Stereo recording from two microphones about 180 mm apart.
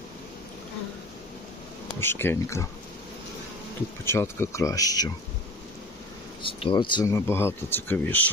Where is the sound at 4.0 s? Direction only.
15° left (ahead or behind).